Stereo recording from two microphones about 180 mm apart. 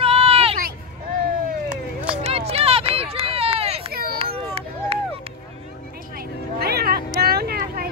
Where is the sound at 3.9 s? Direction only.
60° right (ahead or behind).